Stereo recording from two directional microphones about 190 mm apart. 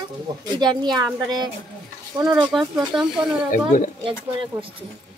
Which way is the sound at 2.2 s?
Centre (ahead or behind).